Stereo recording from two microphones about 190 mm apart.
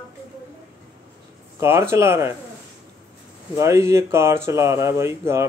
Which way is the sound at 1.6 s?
15° right (ahead or behind).